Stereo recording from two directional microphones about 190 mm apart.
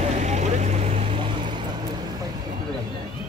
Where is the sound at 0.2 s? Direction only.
35° right (ahead or behind).